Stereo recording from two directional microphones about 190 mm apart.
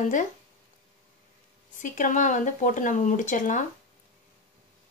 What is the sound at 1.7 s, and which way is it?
Speech, 45° left (ahead or behind).